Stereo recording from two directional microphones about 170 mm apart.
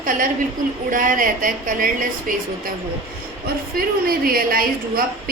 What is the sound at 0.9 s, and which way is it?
Speech, 50° right (ahead or behind).